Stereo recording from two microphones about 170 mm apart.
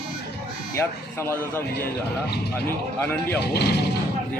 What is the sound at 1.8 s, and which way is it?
Speech, 70° left (ahead or behind).